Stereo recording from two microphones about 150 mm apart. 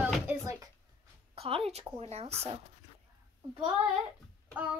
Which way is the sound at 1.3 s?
40° right (ahead or behind).